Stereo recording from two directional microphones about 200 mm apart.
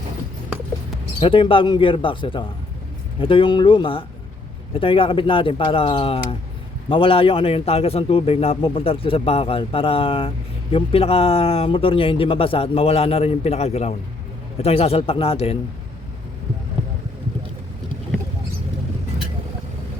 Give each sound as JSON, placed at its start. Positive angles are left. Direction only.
{"t": 1.2, "sound": "a man's voice", "side_deg": 25}